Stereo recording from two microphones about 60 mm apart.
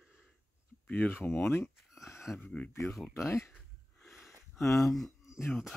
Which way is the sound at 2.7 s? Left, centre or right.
Left.